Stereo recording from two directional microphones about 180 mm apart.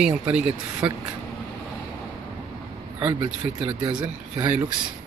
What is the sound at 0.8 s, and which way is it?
Mantra, 25° right (ahead or behind).